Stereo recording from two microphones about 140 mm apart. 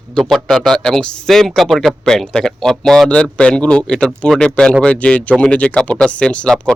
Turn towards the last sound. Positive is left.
turn(degrees=5)  # may be behind; listen again after turning